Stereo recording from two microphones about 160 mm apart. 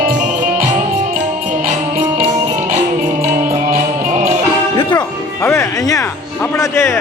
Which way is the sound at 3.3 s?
55° right (ahead or behind).